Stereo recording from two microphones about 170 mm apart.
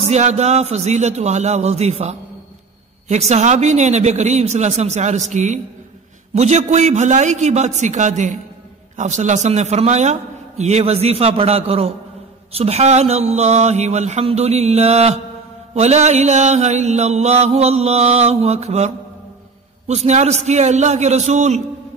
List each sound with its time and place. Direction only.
0.1 s mantra: 40° right (ahead or behind)
3.1 s speech: 40° right (ahead or behind)
10.6 s mantra: 40° right (ahead or behind)
19.9 s mantra: 40° right (ahead or behind)